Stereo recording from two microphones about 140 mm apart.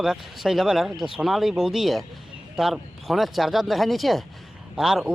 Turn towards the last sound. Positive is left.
turn(degrees=-5)  # may be behind; listen again after turning